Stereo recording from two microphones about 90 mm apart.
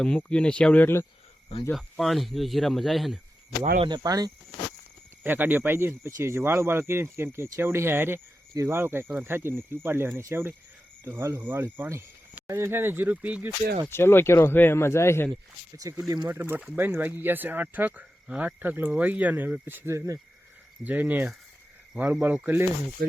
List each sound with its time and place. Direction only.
0.0 s speech: 10° left (ahead or behind)
1.7 s speech: centre (ahead or behind)
3.8 s speech: 50° right (ahead or behind)
5.2 s speech: 20° right (ahead or behind)
13.9 s speech: 25° left (ahead or behind)
15.9 s speech: 40° right (ahead or behind)
16.3 s speech: 20° right (ahead or behind)
20.8 s speech: 20° right (ahead or behind)